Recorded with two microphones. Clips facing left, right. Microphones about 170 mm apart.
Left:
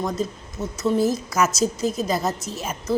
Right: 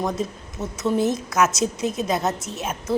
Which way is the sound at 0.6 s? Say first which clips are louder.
Left 1 dB; 25° right (ahead or behind).